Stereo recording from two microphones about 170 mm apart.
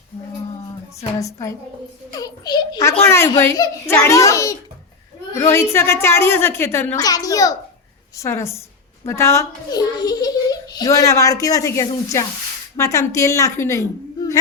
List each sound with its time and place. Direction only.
1.2 s a child's voice: 20° left (ahead or behind)